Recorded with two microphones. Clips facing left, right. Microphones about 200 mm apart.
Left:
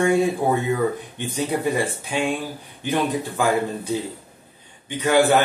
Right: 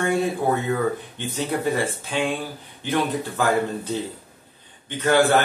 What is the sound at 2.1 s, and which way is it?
A man's voice, 15° left (ahead or behind).